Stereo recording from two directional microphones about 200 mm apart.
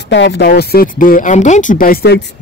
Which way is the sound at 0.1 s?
65° left (ahead or behind).